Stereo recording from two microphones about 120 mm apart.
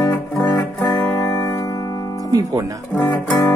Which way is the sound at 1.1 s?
30° left (ahead or behind).